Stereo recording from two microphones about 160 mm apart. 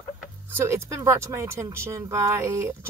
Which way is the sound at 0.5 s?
15° right (ahead or behind).